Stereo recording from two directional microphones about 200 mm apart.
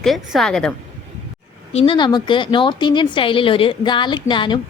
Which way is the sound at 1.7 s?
30° left (ahead or behind).